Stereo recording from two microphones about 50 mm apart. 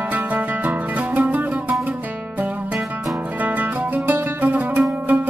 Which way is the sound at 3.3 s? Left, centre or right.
Right.